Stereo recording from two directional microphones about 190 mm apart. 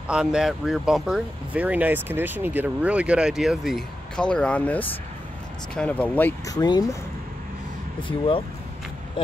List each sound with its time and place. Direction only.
0.1 s speech: 5° right (ahead or behind); by 7.0 s 20° left (ahead or behind)
8.1 s speech: 25° left (ahead or behind)